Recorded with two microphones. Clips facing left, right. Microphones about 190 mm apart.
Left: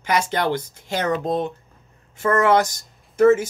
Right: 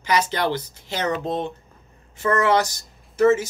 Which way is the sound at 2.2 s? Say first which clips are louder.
Left 2 dB; 50° left (ahead or behind).